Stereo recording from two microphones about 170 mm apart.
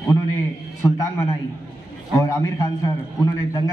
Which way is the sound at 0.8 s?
20° left (ahead or behind).